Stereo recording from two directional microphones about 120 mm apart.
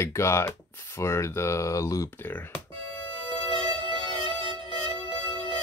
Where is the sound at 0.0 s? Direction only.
25° left (ahead or behind).